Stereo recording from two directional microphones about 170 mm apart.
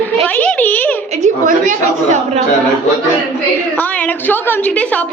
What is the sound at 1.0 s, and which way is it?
A woman's voice, 45° right (ahead or behind).